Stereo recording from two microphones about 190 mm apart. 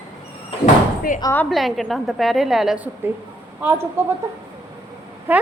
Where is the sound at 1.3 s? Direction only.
Centre (ahead or behind).